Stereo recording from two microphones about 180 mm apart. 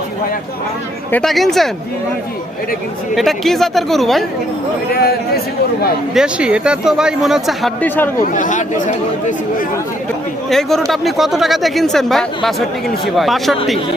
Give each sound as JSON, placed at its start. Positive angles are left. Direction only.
{"t": 1.1, "sound": "speech", "side_deg": 0}
{"t": 3.2, "sound": "speech", "side_deg": 0}
{"t": 4.9, "sound": "a man's voice", "side_deg": 60}
{"t": 6.1, "sound": "speech", "side_deg": -5}
{"t": 8.2, "sound": "speech", "side_deg": 45}
{"t": 10.5, "sound": "speech", "side_deg": 0}